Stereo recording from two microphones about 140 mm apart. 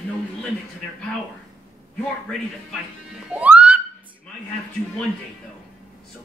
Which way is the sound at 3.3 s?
10° right (ahead or behind).